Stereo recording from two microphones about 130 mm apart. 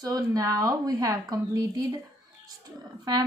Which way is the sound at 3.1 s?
30° right (ahead or behind).